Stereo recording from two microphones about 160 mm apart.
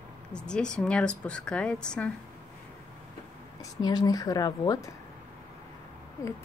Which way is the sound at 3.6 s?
25° left (ahead or behind).